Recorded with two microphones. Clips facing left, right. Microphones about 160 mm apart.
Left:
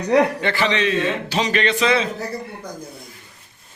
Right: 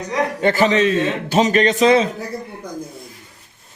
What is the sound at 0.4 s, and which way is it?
A man's voice, 45° right (ahead or behind).